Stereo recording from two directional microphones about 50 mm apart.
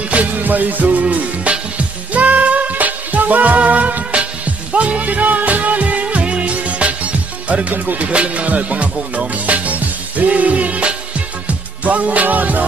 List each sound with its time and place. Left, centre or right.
0.1 s music: right